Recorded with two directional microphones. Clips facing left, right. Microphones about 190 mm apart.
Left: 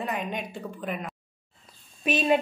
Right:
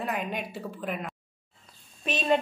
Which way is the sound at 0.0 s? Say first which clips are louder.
Even; 5° right (ahead or behind).